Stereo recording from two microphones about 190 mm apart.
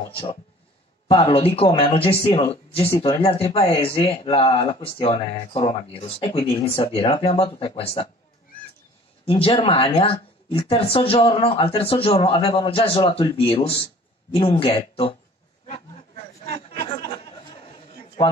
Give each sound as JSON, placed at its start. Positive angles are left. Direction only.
{"t": 0.1, "sound": "speech", "side_deg": 30}
{"t": 9.2, "sound": "speech", "side_deg": 30}